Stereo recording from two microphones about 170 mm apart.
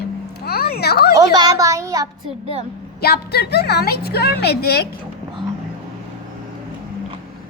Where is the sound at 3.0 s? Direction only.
70° left (ahead or behind).